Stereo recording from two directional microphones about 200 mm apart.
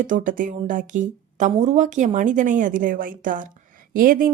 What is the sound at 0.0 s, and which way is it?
A woman's voice, 40° right (ahead or behind).